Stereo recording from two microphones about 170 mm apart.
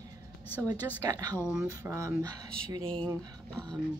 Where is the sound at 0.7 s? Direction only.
20° right (ahead or behind).